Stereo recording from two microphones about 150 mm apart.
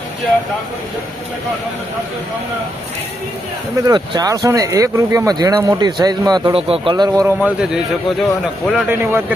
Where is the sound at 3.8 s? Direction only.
25° right (ahead or behind).